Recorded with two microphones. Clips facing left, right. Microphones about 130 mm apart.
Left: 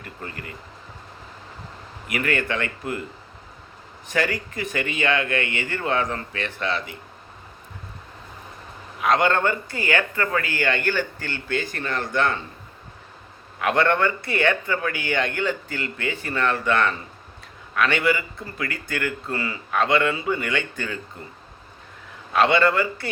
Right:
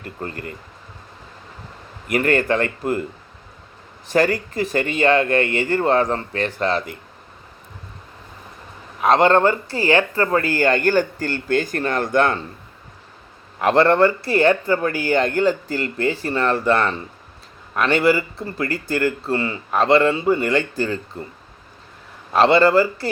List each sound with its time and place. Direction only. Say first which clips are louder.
0.2 s speech: right 7 dB; 40° right (ahead or behind)
2.0 s speech: right 7 dB; 40° right (ahead or behind)
4.1 s speech: right 7 dB; 35° right (ahead or behind)
9.0 s speech: right 6 dB; 35° right (ahead or behind)
13.6 s speech: right 6 dB; 35° right (ahead or behind)
22.3 s speech: right 5 dB; 35° right (ahead or behind)